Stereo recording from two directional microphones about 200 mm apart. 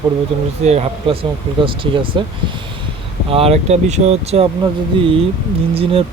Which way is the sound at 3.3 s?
30° right (ahead or behind).